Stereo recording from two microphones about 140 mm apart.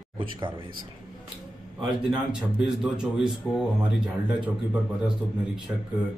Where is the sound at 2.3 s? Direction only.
5° right (ahead or behind).